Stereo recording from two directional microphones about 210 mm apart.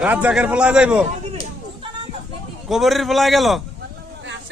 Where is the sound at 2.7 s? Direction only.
Centre (ahead or behind).